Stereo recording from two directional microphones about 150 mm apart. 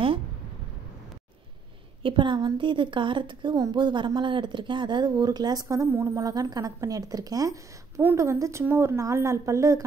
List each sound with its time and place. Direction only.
2.0 s a woman's voice: 35° right (ahead or behind)